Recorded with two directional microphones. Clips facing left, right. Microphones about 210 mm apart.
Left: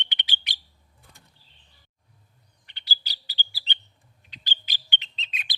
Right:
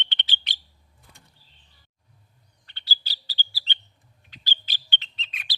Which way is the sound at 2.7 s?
15° left (ahead or behind).